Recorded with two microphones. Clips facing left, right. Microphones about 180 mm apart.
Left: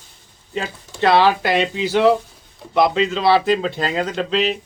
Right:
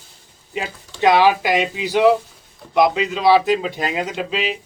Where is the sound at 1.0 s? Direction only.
15° right (ahead or behind).